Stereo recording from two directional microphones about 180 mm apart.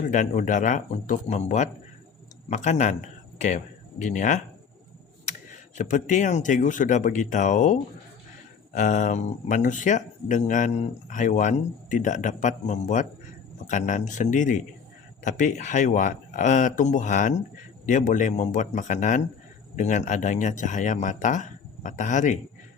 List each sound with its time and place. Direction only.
0.1 s speech: 45° left (ahead or behind)